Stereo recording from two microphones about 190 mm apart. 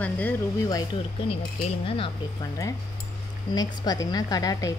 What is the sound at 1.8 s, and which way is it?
Speech, 30° left (ahead or behind).